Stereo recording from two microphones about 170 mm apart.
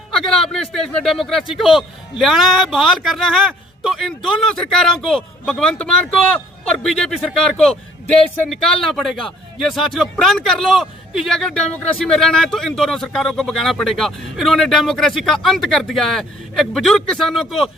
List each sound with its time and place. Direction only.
0.1 s speech: centre (ahead or behind)